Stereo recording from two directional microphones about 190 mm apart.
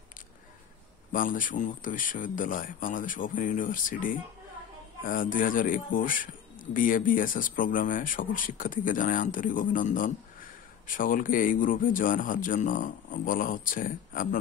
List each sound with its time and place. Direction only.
1.1 s speech: 45° left (ahead or behind)